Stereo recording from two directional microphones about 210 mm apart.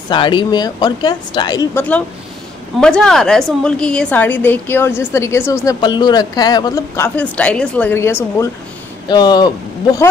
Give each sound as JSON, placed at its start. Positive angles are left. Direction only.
{"t": 0.1, "sound": "a woman's voice", "side_deg": 20}
{"t": 2.8, "sound": "a woman's voice", "side_deg": 5}